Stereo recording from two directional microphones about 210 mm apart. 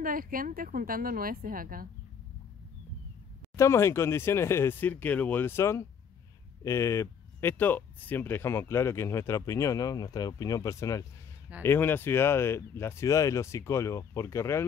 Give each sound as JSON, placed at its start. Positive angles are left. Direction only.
{"t": 0.0, "sound": "a woman's voice", "side_deg": -40}
{"t": 3.5, "sound": "speech", "side_deg": 10}